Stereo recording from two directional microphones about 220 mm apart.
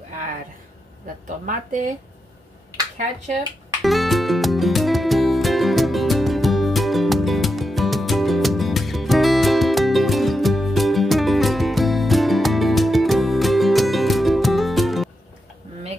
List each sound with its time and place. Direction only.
1.4 s speech: 35° right (ahead or behind)
3.8 s music: centre (ahead or behind)